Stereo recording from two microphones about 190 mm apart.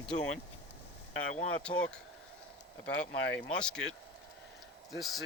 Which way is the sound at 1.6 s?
5° left (ahead or behind).